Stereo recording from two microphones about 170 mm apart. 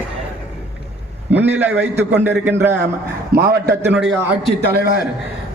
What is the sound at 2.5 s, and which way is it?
Speech, 15° right (ahead or behind).